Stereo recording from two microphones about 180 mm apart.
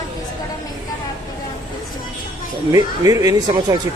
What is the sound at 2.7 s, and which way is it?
Speech, 20° right (ahead or behind).